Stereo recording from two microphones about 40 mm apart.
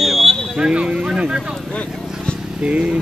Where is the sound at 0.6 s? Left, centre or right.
Right.